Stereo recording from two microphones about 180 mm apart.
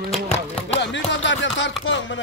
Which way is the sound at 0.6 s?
85° left.